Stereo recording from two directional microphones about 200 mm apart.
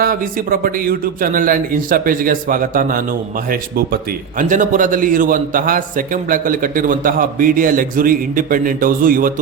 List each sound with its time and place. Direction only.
0.0 s a man's voice: 45° right (ahead or behind)